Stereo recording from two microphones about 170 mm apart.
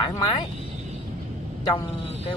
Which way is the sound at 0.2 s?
30° left (ahead or behind).